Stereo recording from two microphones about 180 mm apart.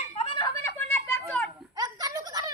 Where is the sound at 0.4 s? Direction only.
10° left (ahead or behind).